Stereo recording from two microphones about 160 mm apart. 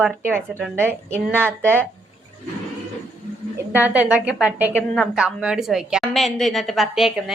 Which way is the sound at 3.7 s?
10° right (ahead or behind).